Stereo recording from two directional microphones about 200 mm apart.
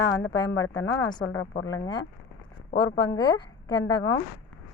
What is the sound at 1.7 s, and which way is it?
Speech, 20° left (ahead or behind).